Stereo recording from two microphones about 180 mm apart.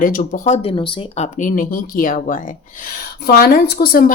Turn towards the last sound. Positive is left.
turn(degrees=55)  # may be behind; listen again after turning